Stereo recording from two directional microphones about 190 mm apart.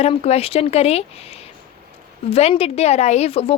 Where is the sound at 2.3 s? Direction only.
30° left (ahead or behind).